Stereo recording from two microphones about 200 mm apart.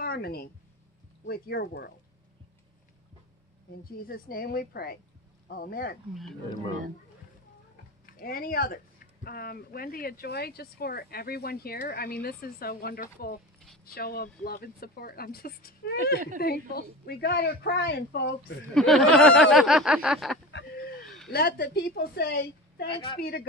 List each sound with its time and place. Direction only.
0.0 s speech: 50° left (ahead or behind)
3.8 s speech: 45° left (ahead or behind)
8.1 s speech: 45° left (ahead or behind)
18.8 s speech: centre (ahead or behind)
20.5 s a sound: 50° left (ahead or behind)
21.0 s a sound: centre (ahead or behind)
21.3 s speech: 50° left (ahead or behind)
22.8 s a woman's voice: 25° left (ahead or behind)
23.1 s speech: 50° left (ahead or behind)